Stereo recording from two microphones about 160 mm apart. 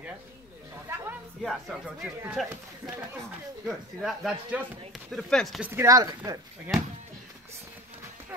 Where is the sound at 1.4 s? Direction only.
Centre (ahead or behind).